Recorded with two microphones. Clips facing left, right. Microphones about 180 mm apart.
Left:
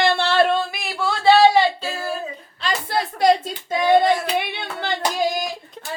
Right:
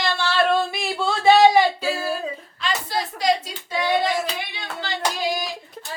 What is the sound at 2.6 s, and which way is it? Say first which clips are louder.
Speech: left 2 dB; 55° left (ahead or behind).